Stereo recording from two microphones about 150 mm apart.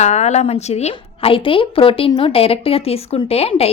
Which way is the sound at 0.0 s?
50° left (ahead or behind).